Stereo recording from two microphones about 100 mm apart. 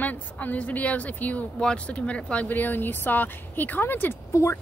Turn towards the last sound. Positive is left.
turn(degrees=30)  # may be behind; listen again after turning